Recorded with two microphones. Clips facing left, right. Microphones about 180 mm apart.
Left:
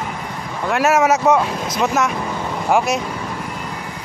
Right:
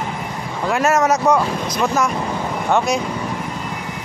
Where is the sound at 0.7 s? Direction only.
5° left (ahead or behind).